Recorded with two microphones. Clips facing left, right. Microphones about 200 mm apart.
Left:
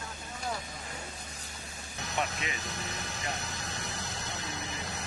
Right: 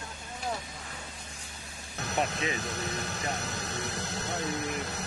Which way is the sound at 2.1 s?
35° right (ahead or behind).